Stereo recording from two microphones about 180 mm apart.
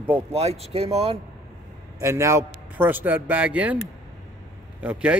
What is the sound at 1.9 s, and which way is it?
Speech, 15° right (ahead or behind).